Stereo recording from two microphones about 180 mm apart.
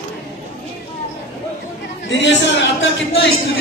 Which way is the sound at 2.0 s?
90° left.